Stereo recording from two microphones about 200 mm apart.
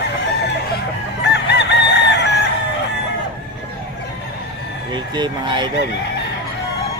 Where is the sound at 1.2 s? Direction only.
55° left (ahead or behind).